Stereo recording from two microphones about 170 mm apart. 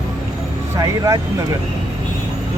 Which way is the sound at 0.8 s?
20° right (ahead or behind).